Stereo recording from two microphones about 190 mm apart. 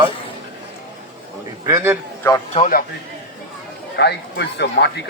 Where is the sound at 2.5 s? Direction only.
45° left (ahead or behind).